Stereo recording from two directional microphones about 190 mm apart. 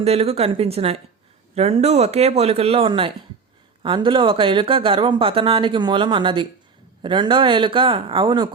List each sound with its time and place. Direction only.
0.0 s speech: 30° right (ahead or behind)